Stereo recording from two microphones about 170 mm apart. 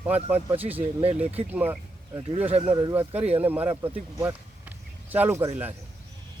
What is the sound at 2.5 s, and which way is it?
Speech, 35° right (ahead or behind).